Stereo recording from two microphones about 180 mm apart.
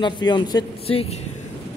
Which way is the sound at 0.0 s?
25° left (ahead or behind).